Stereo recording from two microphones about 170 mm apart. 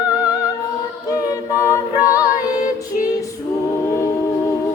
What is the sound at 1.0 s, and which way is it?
A capella, 20° left (ahead or behind).